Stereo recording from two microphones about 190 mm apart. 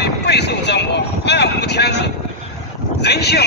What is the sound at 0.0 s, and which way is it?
Vehicle, 60° left (ahead or behind).